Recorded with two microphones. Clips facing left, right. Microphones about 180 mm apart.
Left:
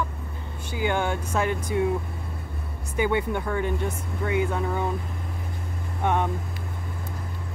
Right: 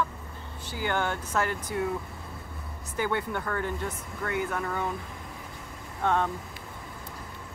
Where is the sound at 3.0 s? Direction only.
15° left (ahead or behind).